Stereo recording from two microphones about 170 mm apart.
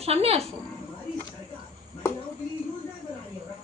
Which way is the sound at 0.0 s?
35° right (ahead or behind).